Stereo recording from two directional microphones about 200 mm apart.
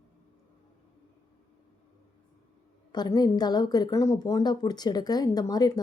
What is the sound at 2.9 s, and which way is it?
A woman's voice, 20° left (ahead or behind).